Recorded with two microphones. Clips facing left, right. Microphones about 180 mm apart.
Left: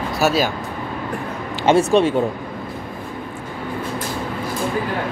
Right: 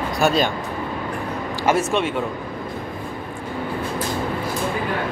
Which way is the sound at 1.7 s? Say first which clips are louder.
Left 6 dB; 30° left (ahead or behind).